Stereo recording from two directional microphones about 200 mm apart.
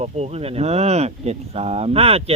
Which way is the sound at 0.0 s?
30° right (ahead or behind).